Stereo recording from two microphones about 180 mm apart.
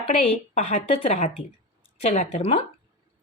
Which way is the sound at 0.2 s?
40° left (ahead or behind).